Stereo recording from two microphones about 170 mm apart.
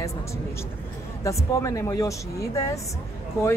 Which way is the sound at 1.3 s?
15° left (ahead or behind).